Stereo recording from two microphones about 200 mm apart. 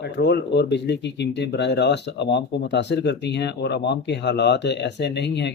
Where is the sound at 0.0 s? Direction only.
55° left (ahead or behind).